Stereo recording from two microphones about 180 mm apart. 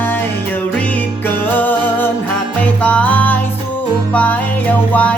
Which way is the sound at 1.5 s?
10° left (ahead or behind).